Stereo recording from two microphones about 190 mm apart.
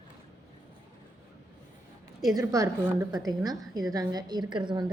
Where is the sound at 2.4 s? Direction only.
15° right (ahead or behind).